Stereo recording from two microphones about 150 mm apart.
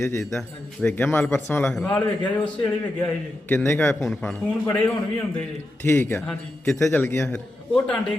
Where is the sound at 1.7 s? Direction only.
5° left (ahead or behind).